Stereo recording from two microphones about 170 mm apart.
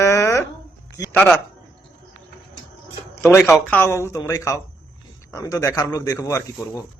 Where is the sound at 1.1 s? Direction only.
10° left (ahead or behind).